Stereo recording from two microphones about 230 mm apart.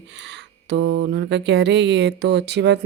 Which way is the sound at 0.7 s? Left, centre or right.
Right.